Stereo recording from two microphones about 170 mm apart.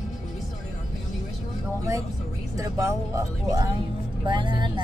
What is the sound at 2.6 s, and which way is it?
Speech, 20° right (ahead or behind).